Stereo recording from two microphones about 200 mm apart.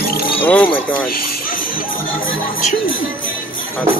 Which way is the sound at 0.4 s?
10° left (ahead or behind).